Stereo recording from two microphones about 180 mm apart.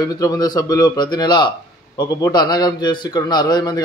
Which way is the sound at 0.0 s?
20° left (ahead or behind).